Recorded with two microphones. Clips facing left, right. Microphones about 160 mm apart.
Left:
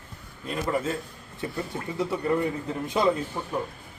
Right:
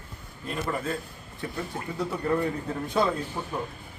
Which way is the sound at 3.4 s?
5° right (ahead or behind).